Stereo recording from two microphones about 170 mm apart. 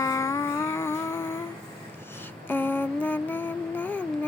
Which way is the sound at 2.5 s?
10° left (ahead or behind).